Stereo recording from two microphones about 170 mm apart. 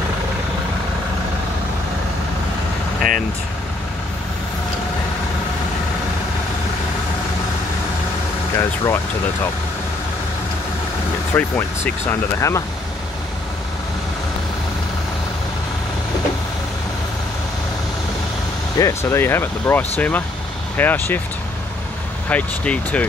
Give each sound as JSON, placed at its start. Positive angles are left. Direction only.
{"t": 8.5, "sound": "speech", "side_deg": 15}
{"t": 11.3, "sound": "speech", "side_deg": 15}
{"t": 18.8, "sound": "speech", "side_deg": 15}
{"t": 22.3, "sound": "speech", "side_deg": 10}